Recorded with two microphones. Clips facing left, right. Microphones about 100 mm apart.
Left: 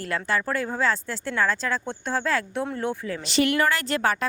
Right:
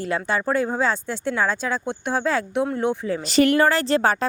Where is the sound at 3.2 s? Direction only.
40° right (ahead or behind).